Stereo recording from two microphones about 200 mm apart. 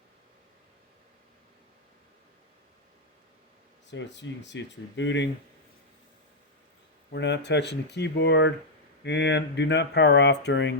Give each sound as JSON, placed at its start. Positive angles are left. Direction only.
{"t": 3.8, "sound": "speech", "side_deg": 60}
{"t": 7.1, "sound": "speech", "side_deg": 60}